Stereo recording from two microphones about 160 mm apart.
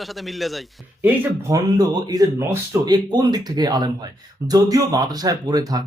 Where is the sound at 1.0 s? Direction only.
15° right (ahead or behind).